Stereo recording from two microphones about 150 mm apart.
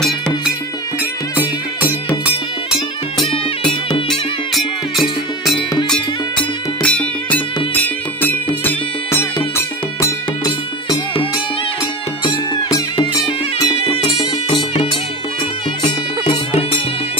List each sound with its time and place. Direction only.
1.3 s music: 10° right (ahead or behind)
6.8 s music: 10° left (ahead or behind)
9.9 s music: 25° left (ahead or behind)
14.7 s music: 35° left (ahead or behind)